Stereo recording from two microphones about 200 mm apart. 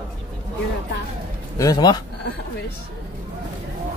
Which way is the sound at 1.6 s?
20° left (ahead or behind).